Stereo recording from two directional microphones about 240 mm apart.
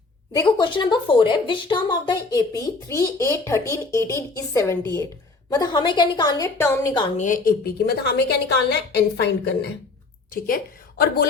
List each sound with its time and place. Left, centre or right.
0.3 s a woman's voice: centre
7.2 s a woman's voice: left